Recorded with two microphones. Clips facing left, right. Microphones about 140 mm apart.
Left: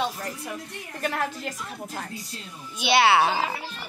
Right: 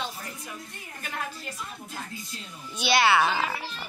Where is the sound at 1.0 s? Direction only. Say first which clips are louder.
Left 8 dB; 85° left; by 2.9 s 70° left (ahead or behind).